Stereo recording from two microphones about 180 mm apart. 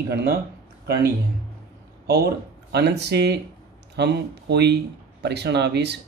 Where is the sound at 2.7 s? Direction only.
65° right (ahead or behind).